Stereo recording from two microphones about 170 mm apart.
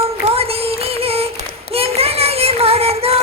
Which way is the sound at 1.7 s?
35° right (ahead or behind).